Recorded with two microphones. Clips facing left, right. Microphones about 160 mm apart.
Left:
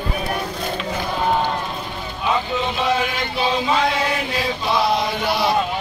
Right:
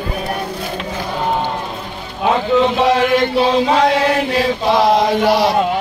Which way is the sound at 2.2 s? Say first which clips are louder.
Right 8 dB; 75° right (ahead or behind).